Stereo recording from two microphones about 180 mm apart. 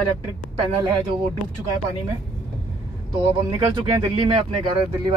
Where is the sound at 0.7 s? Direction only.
25° right (ahead or behind).